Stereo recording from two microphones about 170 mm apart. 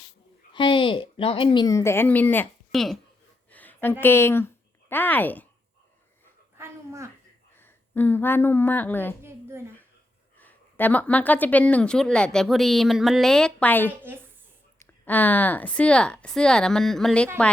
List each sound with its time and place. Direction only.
0.5 s a woman's voice: 30° left (ahead or behind); by 2.8 s 10° left (ahead or behind)
3.5 s a sound: 10° left (ahead or behind)
4.0 s speech: 15° left (ahead or behind)
6.6 s a sound: 15° right (ahead or behind)
7.5 s speech: 10° left (ahead or behind)
10.3 s speech: 10° left (ahead or behind)
15.0 s speech: 10° left (ahead or behind)